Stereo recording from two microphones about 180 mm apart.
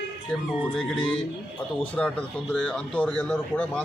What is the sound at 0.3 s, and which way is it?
Speech, 5° left (ahead or behind).